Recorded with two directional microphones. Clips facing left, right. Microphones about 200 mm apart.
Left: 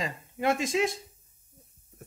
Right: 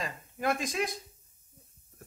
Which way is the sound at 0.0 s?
25° left (ahead or behind).